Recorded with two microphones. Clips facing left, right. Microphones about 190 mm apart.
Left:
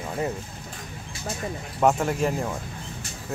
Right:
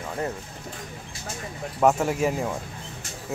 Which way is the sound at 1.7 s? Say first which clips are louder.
Right 1 dB; 5° right (ahead or behind).